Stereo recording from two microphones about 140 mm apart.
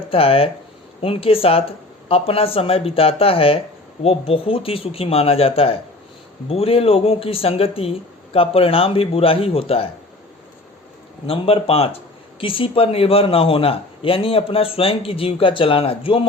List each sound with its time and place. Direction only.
0.1 s speech: 45° left (ahead or behind)
11.3 s speech: 45° left (ahead or behind)